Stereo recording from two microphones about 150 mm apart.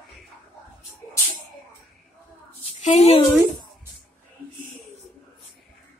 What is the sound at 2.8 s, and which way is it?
Speech, 55° left (ahead or behind).